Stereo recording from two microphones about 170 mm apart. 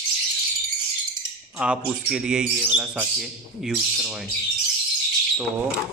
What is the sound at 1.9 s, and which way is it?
Speech, 5° right (ahead or behind).